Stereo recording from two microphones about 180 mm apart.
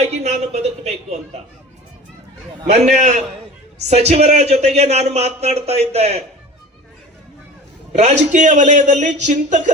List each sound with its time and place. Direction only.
0.2 s speech: 35° right (ahead or behind)
2.9 s speech: 40° right (ahead or behind)
7.9 s speech: 40° right (ahead or behind)